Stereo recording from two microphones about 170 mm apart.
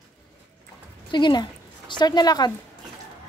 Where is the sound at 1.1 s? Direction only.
25° left (ahead or behind).